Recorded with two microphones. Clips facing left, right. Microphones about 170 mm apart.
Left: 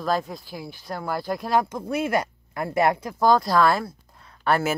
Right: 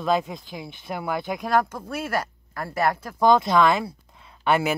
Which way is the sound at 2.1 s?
20° left (ahead or behind).